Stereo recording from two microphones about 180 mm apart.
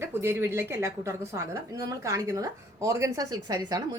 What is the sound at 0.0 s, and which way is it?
A woman's voice, 10° right (ahead or behind).